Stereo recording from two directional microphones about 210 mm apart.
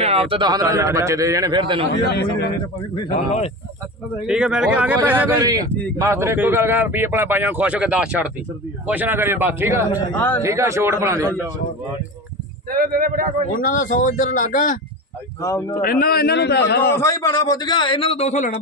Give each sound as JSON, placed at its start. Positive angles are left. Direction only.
{"t": 0.0, "sound": "a man's voice", "side_deg": -25}
{"t": 2.1, "sound": "a man's voice", "side_deg": 50}
{"t": 3.0, "sound": "a man's voice", "side_deg": 30}
{"t": 4.3, "sound": "speech", "side_deg": -5}
{"t": 5.9, "sound": "speech", "side_deg": -15}
{"t": 10.1, "sound": "a man's voice", "side_deg": 10}
{"t": 10.4, "sound": "speech", "side_deg": -15}
{"t": 12.7, "sound": "speech", "side_deg": -45}
{"t": 13.6, "sound": "a man's voice", "side_deg": 40}
{"t": 16.9, "sound": "a man's voice", "side_deg": 15}